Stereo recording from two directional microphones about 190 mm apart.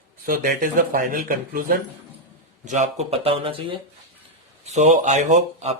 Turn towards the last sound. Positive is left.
turn(degrees=-35)  # may be behind; listen again after turning